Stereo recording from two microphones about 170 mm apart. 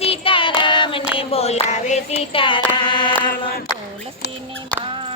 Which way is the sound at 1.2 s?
35° left (ahead or behind).